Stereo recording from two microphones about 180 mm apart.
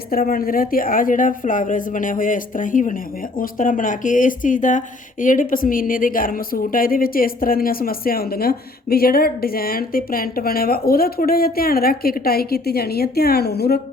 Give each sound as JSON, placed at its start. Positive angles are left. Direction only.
{"t": 0.1, "sound": "a woman's voice", "side_deg": 50}